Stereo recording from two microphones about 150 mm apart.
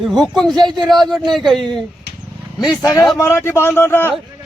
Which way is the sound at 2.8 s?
25° left (ahead or behind).